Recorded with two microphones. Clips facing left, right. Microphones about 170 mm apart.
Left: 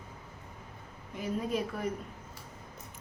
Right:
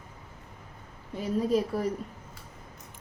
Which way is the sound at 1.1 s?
35° right (ahead or behind).